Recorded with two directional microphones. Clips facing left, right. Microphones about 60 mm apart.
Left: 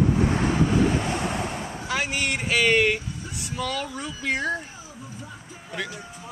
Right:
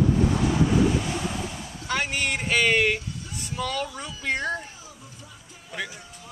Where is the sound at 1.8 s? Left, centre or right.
Centre.